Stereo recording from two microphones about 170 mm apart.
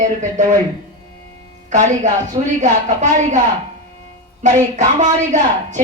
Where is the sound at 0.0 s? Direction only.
45° right (ahead or behind).